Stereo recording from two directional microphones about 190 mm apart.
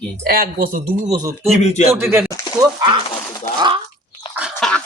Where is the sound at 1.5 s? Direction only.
35° left (ahead or behind).